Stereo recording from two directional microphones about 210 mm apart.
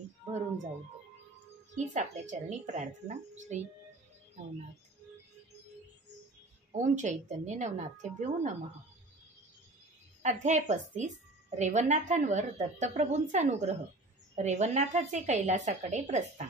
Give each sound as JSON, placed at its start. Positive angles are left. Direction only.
{"t": 1.8, "sound": "a woman's voice", "side_deg": -35}
{"t": 6.7, "sound": "a woman's voice", "side_deg": -35}
{"t": 10.2, "sound": "a woman's voice", "side_deg": -35}